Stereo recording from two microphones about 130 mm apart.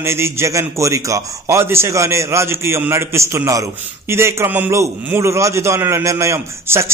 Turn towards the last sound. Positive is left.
turn(degrees=-20)  # may be behind; listen again after turning